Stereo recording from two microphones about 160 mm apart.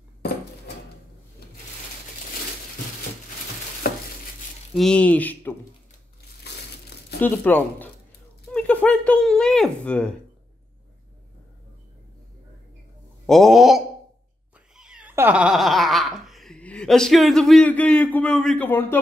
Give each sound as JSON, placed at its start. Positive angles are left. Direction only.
{"t": 3.8, "sound": "stir", "side_deg": 75}
{"t": 4.7, "sound": "speech", "side_deg": 5}
{"t": 7.2, "sound": "speech", "side_deg": 10}
{"t": 13.3, "sound": "a sound", "side_deg": 0}
{"t": 14.8, "sound": "cat", "side_deg": -5}